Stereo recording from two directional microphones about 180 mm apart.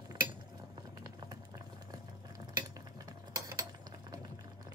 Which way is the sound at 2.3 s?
25° right (ahead or behind).